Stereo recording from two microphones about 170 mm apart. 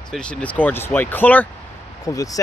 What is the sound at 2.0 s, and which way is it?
Speech, 20° left (ahead or behind).